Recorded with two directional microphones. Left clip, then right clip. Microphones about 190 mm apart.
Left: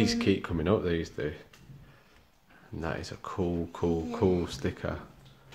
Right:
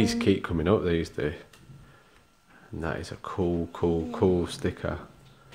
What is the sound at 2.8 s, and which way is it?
Speech, 10° right (ahead or behind).